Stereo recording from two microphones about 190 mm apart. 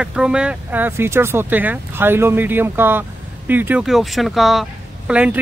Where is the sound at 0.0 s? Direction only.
5° right (ahead or behind).